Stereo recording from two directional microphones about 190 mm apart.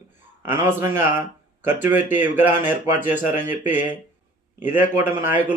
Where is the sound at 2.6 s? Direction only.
40° left (ahead or behind).